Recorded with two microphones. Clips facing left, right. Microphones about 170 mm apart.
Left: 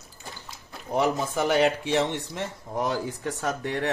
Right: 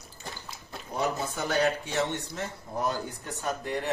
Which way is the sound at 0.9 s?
90° left.